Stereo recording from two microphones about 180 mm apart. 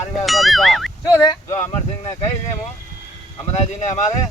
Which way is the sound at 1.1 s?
20° left (ahead or behind).